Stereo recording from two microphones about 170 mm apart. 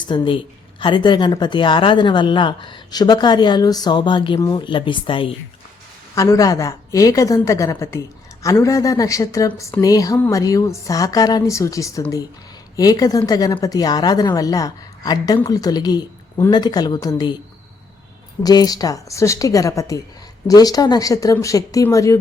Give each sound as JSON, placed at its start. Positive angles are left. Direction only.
{"t": 0.0, "sound": "speech", "side_deg": 30}
{"t": 6.1, "sound": "speech", "side_deg": 20}
{"t": 18.4, "sound": "speech", "side_deg": 20}